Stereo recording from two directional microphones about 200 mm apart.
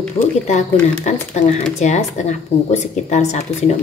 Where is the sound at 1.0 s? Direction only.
35° left (ahead or behind).